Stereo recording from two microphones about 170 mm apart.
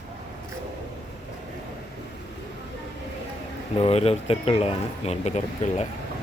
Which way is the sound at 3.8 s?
35° left (ahead or behind).